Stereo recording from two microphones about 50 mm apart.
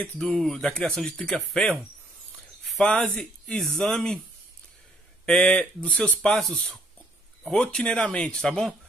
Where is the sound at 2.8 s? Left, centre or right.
Centre.